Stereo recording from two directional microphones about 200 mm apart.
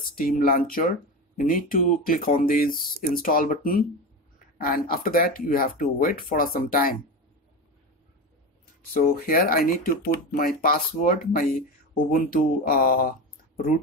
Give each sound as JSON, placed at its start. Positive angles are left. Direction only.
{"t": 0.2, "sound": "speech", "side_deg": 45}
{"t": 8.9, "sound": "speech", "side_deg": 50}